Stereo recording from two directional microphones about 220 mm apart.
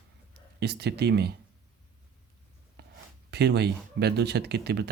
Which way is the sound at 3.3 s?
50° right (ahead or behind).